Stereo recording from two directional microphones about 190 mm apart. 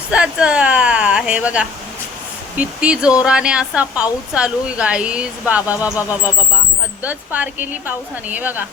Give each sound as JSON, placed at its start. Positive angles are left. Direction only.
{"t": 0.1, "sound": "speech", "side_deg": -5}
{"t": 7.0, "sound": "a woman's voice", "side_deg": -10}